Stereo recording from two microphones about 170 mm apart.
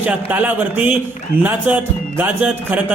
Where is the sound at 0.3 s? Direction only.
10° right (ahead or behind).